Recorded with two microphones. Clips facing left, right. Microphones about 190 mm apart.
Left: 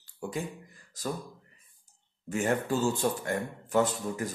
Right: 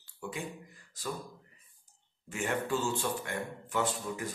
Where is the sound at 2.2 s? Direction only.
40° left (ahead or behind).